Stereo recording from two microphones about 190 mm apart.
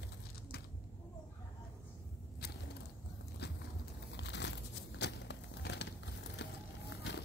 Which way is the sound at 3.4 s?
60° left (ahead or behind).